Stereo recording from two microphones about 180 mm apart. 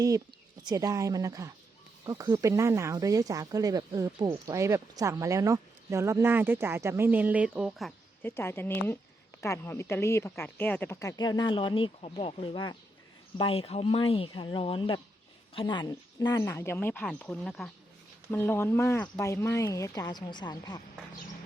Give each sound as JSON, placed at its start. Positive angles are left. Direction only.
{"t": 0.6, "sound": "speech", "side_deg": -20}
{"t": 8.2, "sound": "speech", "side_deg": 10}